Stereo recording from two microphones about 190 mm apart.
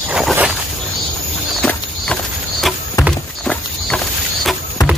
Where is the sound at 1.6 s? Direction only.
5° left (ahead or behind).